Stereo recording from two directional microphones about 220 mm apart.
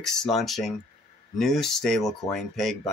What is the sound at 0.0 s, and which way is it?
Speech, centre (ahead or behind).